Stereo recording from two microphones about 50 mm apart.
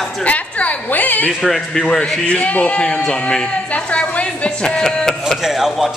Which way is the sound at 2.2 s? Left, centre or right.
Left.